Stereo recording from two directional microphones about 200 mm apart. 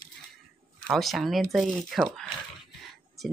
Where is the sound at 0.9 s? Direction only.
Centre (ahead or behind).